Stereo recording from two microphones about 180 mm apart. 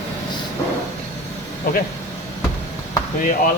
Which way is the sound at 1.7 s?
50° left (ahead or behind).